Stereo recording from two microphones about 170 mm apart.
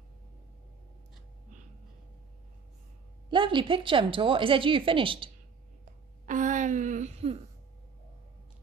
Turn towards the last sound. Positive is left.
turn(degrees=-40)  # may be behind; listen again after turning